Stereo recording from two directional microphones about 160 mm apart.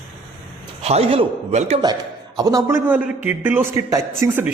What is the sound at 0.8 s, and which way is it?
Speech, 40° right (ahead or behind).